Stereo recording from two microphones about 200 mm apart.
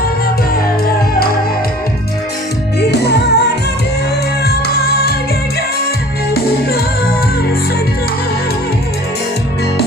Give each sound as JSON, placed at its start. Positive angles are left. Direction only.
{"t": 2.8, "sound": "music", "side_deg": 55}
{"t": 6.3, "sound": "music", "side_deg": 50}